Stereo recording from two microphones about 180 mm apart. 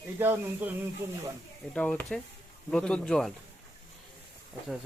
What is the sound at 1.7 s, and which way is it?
Speech, 5° left (ahead or behind).